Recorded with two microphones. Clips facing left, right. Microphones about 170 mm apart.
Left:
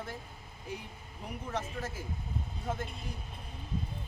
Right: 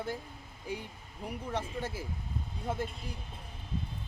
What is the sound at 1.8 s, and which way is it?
Speech, 10° right (ahead or behind).